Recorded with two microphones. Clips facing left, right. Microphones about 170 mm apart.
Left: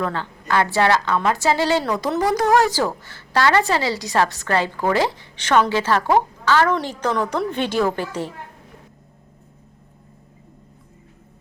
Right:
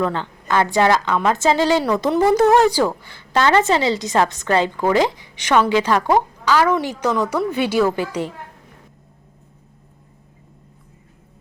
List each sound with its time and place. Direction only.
0.0 s a woman's voice: 20° right (ahead or behind)